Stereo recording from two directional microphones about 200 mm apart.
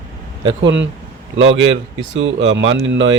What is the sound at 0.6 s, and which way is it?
Speech, 65° right (ahead or behind).